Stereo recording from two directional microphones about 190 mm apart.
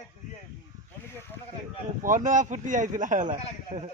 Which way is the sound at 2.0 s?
40° right (ahead or behind).